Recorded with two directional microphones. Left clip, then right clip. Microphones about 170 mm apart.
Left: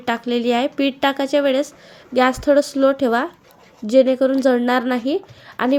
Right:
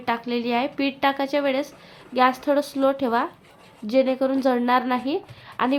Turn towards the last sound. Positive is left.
turn(degrees=25)  # may be behind; listen again after turning